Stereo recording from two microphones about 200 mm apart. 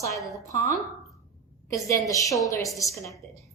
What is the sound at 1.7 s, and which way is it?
A woman's voice, 15° left (ahead or behind).